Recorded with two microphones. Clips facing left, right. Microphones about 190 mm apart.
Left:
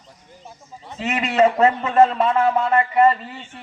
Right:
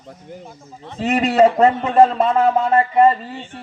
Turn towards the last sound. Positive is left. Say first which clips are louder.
# right 2 dB
turn(degrees=-30)  # may be behind; listen again after turning